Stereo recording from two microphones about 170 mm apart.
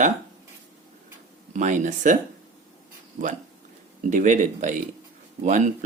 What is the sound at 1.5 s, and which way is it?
Speech, 45° right (ahead or behind).